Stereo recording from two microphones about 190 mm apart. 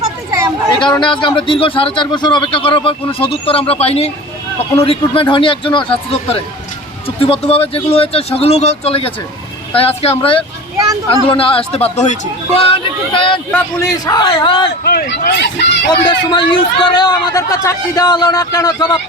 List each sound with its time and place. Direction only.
0.3 s a sound: 20° right (ahead or behind)
0.7 s a man's voice: 25° left (ahead or behind)
13.5 s a man's voice: 15° left (ahead or behind)
14.8 s speech: 55° left (ahead or behind)
16.0 s a man's voice: 25° left (ahead or behind)